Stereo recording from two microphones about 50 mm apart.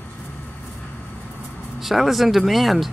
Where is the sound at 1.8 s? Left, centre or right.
Centre.